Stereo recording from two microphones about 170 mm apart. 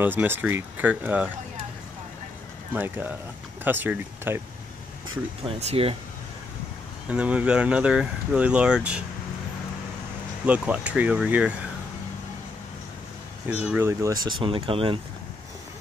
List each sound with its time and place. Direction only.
0.0 s speech: 10° right (ahead or behind)
2.7 s speech: 10° right (ahead or behind)
5.4 s speech: 35° right (ahead or behind)
7.1 s speech: 10° right (ahead or behind)
10.4 s speech: 10° right (ahead or behind)
13.7 s speech: 15° right (ahead or behind)
14.2 s speech: 30° right (ahead or behind)